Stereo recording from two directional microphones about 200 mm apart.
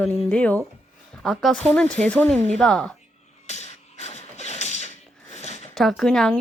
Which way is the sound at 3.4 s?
35° left (ahead or behind).